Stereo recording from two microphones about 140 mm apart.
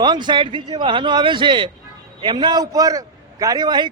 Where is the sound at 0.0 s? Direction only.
30° right (ahead or behind).